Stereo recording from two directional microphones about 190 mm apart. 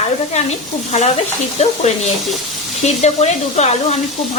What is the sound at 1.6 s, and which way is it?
Speech, 35° left (ahead or behind).